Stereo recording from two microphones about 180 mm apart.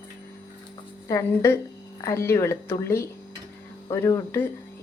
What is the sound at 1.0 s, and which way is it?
A woman's voice, 15° left (ahead or behind).